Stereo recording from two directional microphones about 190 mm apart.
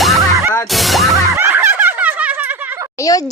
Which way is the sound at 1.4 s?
10° right (ahead or behind).